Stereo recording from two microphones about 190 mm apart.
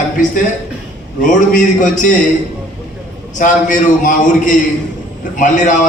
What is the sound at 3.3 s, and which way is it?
A man's voice, 40° left (ahead or behind).